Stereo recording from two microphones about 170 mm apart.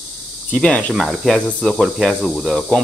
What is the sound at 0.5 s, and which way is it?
Speech, 5° left (ahead or behind).